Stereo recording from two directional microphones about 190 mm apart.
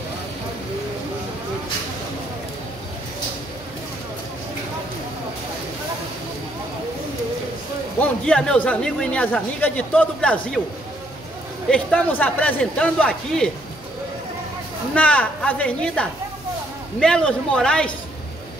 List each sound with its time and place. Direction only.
8.0 s speech: 5° left (ahead or behind)
11.7 s speech: 5° left (ahead or behind)
15.0 s a man's voice: 5° left (ahead or behind)